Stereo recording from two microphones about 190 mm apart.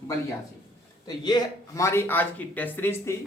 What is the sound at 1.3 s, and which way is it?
Speech, 20° left (ahead or behind).